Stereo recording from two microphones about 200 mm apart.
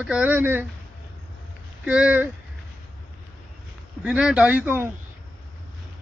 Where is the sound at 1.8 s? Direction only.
5° right (ahead or behind).